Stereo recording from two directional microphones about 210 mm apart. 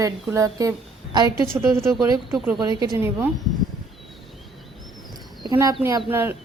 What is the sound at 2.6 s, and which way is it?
Speech, 20° right (ahead or behind).